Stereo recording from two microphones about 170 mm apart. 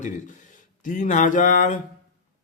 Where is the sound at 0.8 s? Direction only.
50° left (ahead or behind).